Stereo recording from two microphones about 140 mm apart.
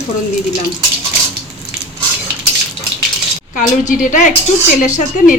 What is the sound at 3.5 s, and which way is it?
Speech, 65° left (ahead or behind).